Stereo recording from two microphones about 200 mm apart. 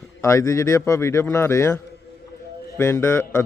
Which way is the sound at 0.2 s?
15° left (ahead or behind).